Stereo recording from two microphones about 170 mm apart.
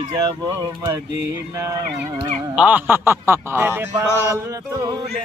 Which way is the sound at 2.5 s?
10° right (ahead or behind).